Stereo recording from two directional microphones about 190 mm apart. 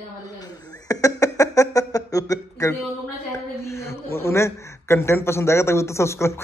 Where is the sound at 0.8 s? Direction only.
15° left (ahead or behind).